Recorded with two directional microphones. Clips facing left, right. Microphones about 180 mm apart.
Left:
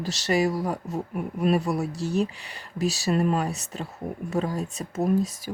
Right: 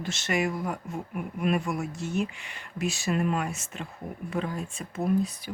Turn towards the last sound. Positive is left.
turn(degrees=40)  # may be behind; listen again after turning